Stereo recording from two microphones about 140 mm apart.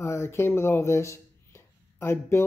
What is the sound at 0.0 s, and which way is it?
A woman's voice, 20° left (ahead or behind).